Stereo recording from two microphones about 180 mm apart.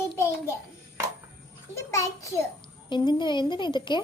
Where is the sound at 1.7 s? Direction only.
15° left (ahead or behind).